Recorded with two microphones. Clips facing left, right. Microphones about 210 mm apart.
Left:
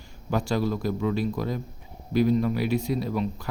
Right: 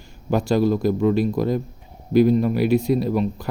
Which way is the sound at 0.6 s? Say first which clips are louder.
Right 8 dB; 45° right (ahead or behind).